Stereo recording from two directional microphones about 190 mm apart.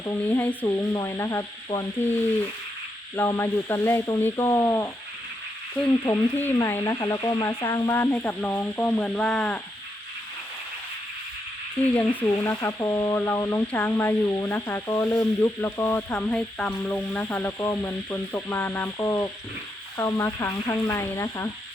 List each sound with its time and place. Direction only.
0.0 s speech: 10° left (ahead or behind)
3.2 s speech: 15° left (ahead or behind)
5.7 s sizzle: 5° left (ahead or behind)
6.1 s speech: 15° left (ahead or behind)
11.9 s speech: 10° left (ahead or behind)